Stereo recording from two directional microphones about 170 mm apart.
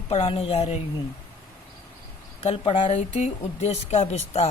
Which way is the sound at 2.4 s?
35° left (ahead or behind).